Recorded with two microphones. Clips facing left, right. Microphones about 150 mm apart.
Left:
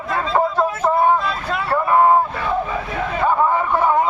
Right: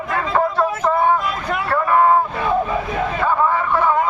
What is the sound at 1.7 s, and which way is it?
Vehicle, 15° left (ahead or behind).